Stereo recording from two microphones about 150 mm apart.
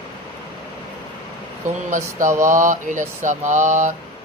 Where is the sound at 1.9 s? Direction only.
55° right (ahead or behind).